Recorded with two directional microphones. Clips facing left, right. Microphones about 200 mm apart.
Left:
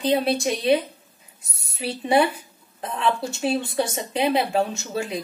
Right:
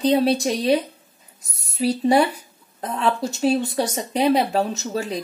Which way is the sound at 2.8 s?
40° right (ahead or behind).